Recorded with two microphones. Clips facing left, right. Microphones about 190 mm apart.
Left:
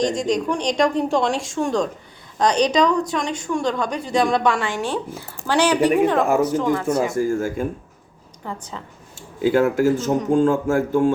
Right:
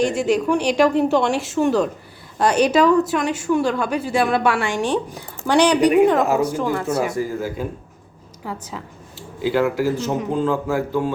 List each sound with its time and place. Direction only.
0.0 s a woman's voice: 10° right (ahead or behind)
7.1 s speech: 45° left (ahead or behind)
8.4 s a woman's voice: 10° right (ahead or behind)
9.1 s speech: 50° left (ahead or behind)